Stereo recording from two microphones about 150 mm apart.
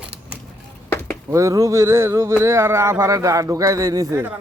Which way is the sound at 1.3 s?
20° right (ahead or behind).